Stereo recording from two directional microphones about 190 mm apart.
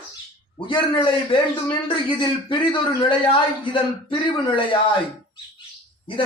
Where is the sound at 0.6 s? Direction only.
25° left (ahead or behind).